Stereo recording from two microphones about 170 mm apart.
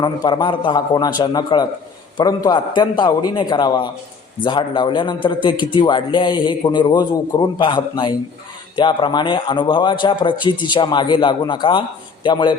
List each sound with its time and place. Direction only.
0.0 s a man's voice: 25° left (ahead or behind)